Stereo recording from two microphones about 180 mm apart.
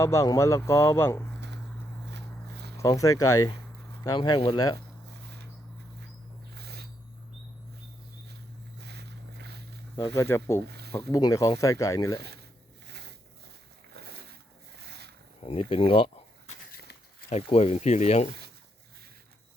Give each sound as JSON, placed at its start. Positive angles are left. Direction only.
{"t": 0.0, "sound": "speech", "side_deg": 15}
{"t": 2.0, "sound": "walk", "side_deg": -70}
{"t": 2.7, "sound": "speech", "side_deg": 20}
{"t": 5.1, "sound": "a sound", "side_deg": -65}
{"t": 6.5, "sound": "a sound", "side_deg": -60}
{"t": 8.8, "sound": "vehicle", "side_deg": -65}
{"t": 10.2, "sound": "speech", "side_deg": 15}
{"t": 10.7, "sound": "a sound", "side_deg": -65}
{"t": 11.1, "sound": "speech", "side_deg": 20}
{"t": 13.9, "sound": "boat", "side_deg": -60}
{"t": 14.8, "sound": "a sound", "side_deg": -65}
{"t": 15.4, "sound": "speech", "side_deg": 30}
{"t": 17.2, "sound": "speech", "side_deg": 35}